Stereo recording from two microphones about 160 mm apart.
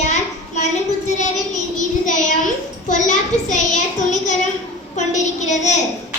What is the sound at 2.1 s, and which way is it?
Child singing, 50° left (ahead or behind).